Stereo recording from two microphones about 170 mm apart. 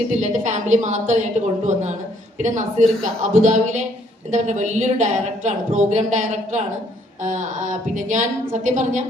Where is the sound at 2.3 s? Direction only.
45° right (ahead or behind).